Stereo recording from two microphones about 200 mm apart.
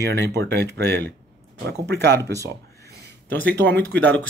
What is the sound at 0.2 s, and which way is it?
Speech, 60° right (ahead or behind).